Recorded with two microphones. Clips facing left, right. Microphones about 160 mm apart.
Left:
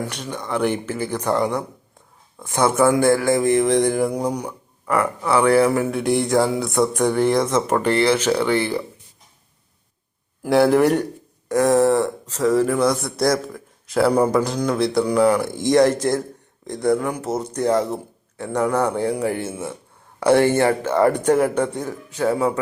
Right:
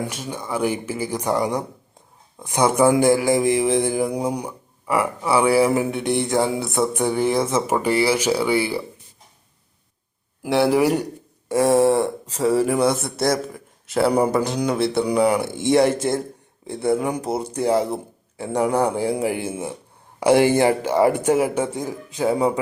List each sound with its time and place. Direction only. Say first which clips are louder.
0.1 s speech: left 1 dB; 5° right (ahead or behind)
5.9 s speech: left 2 dB; centre (ahead or behind)
10.4 s speech: left 2 dB; centre (ahead or behind)
11.4 s a sound: left 1 dB; 10° right (ahead or behind)
11.8 s a man's voice: even; 10° right (ahead or behind)